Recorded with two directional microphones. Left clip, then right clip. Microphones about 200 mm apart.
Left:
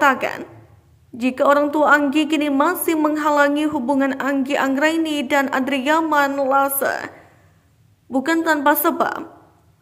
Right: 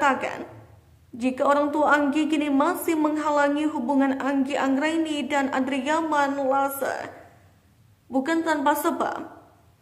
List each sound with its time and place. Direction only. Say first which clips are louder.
0.0 s a woman's voice: left 6 dB; 20° left (ahead or behind)
8.1 s a woman's voice: left 5 dB; 20° left (ahead or behind)